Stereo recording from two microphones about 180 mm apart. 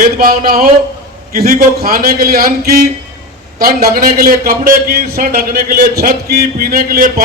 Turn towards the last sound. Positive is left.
turn(degrees=-55)  # may be behind; listen again after turning